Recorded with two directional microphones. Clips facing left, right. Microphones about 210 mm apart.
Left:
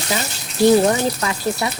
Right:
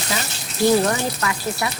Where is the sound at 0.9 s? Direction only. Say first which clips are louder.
Left 4 dB; 25° left (ahead or behind).